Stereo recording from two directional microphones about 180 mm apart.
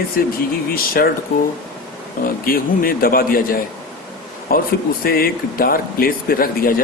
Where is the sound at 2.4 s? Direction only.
55° left (ahead or behind).